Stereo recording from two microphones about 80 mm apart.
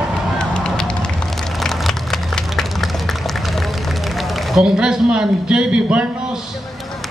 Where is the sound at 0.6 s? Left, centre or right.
Centre.